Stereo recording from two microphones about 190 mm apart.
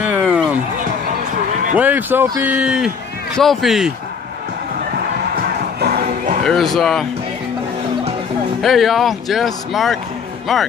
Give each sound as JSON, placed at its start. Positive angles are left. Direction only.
{"t": 0.0, "sound": "a sound", "side_deg": -5}
{"t": 1.8, "sound": "speech", "side_deg": -10}
{"t": 5.3, "sound": "music", "side_deg": -55}
{"t": 6.4, "sound": "speech", "side_deg": 0}
{"t": 8.5, "sound": "speech", "side_deg": 0}